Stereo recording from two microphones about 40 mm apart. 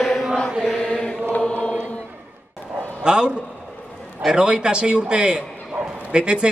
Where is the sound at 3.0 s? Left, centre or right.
Right.